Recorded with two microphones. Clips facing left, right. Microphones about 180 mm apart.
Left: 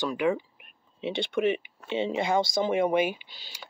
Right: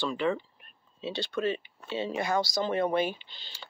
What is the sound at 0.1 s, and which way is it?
Speech, 10° left (ahead or behind).